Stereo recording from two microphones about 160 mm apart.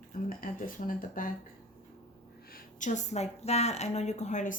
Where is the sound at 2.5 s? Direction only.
50° left (ahead or behind).